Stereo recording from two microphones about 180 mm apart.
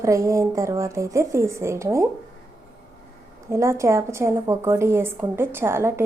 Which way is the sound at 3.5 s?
15° right (ahead or behind).